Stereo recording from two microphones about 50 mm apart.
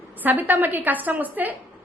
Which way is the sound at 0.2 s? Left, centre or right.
Right.